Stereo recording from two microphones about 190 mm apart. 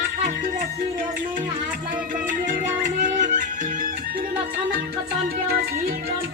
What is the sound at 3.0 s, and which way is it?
Music, 45° right (ahead or behind).